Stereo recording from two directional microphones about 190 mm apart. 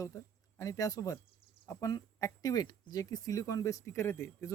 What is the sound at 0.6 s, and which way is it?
Speech, 15° left (ahead or behind).